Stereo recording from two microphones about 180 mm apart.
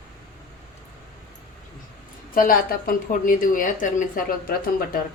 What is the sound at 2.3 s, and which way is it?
A woman's voice, 50° left (ahead or behind).